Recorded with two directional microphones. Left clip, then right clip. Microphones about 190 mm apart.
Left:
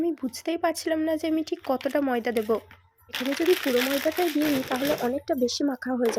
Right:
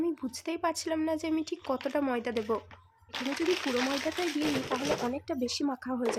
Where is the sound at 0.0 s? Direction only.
20° left (ahead or behind).